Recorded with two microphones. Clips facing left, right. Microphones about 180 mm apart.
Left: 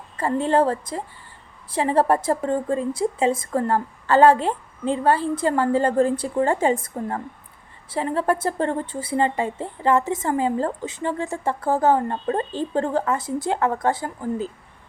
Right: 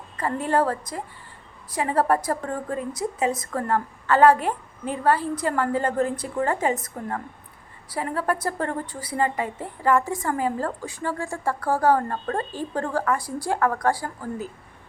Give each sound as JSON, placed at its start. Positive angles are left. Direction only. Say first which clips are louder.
{"t": 0.2, "sound": "a woman's voice", "louder": "left 3 dB", "side_deg": 25}